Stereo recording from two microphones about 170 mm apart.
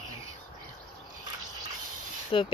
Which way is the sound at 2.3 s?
30° left (ahead or behind).